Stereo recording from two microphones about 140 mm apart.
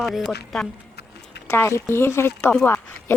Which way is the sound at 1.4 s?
20° left (ahead or behind).